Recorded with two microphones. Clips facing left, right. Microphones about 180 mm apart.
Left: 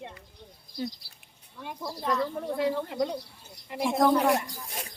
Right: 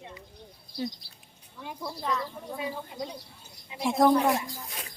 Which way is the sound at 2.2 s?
75° left (ahead or behind).